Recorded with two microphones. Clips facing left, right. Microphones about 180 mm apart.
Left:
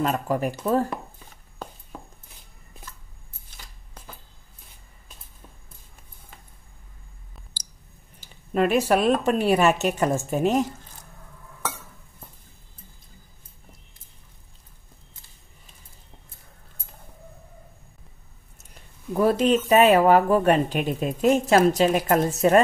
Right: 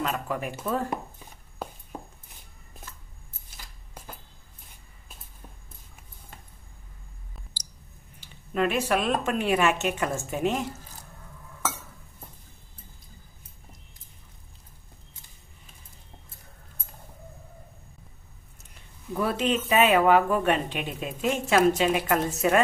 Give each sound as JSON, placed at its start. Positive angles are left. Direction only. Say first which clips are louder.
{"t": 0.0, "sound": "speech", "louder": "left 6 dB", "side_deg": 40}
{"t": 8.2, "sound": "speech", "louder": "left 4 dB", "side_deg": 40}
{"t": 19.1, "sound": "speech", "louder": "left 6 dB", "side_deg": 40}